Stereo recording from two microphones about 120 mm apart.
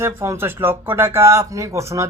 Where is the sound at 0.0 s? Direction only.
20° right (ahead or behind).